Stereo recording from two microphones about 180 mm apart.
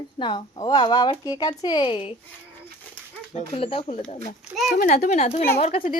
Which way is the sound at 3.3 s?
30° left (ahead or behind).